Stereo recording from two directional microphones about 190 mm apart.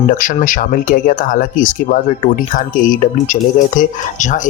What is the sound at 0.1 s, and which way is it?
Speech, 45° left (ahead or behind).